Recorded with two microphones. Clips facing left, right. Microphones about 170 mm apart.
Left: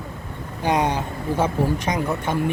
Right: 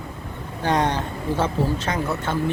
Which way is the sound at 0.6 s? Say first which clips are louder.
Left 1 dB; 10° left (ahead or behind).